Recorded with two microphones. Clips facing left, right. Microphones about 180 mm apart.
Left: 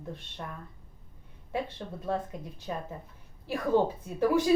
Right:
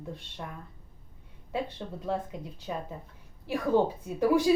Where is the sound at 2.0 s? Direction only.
15° right (ahead or behind).